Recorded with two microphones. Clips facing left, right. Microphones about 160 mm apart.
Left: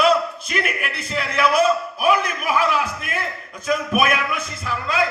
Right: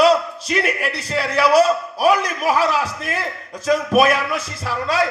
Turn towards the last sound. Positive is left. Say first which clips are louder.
# right 3 dB
turn(degrees=-35)  # may be behind; listen again after turning